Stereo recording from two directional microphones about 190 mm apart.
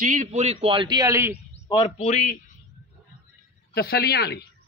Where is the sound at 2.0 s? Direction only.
35° left (ahead or behind).